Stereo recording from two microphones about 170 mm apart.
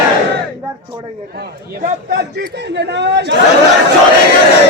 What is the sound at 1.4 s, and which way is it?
A man's voice, 65° right (ahead or behind).